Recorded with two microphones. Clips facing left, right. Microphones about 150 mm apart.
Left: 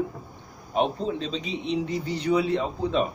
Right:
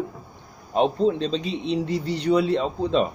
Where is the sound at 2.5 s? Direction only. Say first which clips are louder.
Right 3 dB; 30° right (ahead or behind).